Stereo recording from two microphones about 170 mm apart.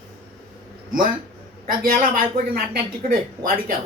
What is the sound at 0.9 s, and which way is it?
Speech, 55° right (ahead or behind).